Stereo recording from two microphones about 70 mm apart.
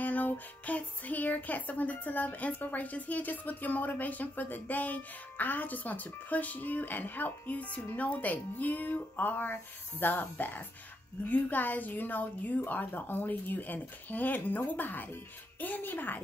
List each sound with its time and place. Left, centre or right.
0.0 s music: left